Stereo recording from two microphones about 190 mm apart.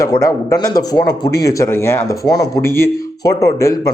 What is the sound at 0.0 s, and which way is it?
Speech, 20° left (ahead or behind).